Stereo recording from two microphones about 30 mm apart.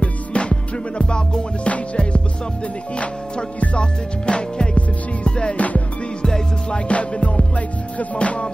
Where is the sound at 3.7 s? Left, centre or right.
Left.